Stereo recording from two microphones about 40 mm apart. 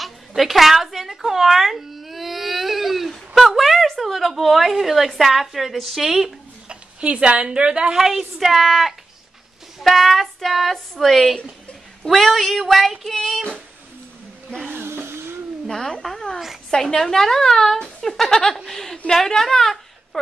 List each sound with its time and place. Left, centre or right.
0.4 s baby cry: centre
3.3 s a sound: centre
4.0 s a woman's voice: centre
6.7 s a woman's voice: right
7.9 s a woman's voice: centre
14.7 s a sound: right
15.6 s a woman's voice: centre